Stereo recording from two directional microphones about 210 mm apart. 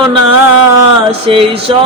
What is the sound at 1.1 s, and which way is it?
Mantra, 25° right (ahead or behind).